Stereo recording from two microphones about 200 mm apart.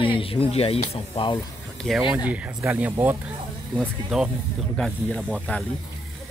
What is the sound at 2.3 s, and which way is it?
Speech, 10° right (ahead or behind).